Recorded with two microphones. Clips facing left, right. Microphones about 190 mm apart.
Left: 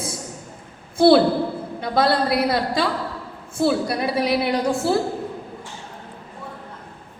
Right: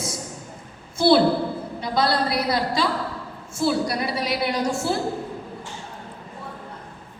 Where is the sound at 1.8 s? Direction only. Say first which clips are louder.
Left 3 dB; 55° left (ahead or behind).